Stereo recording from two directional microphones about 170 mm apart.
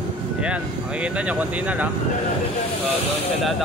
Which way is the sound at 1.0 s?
5° right (ahead or behind).